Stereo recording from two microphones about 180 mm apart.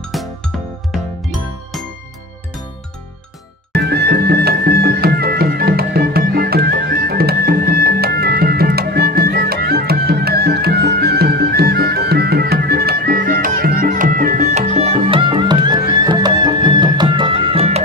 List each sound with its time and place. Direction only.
0.1 s music: centre (ahead or behind)
3.7 s music: 65° right (ahead or behind); by 17.8 s 35° right (ahead or behind)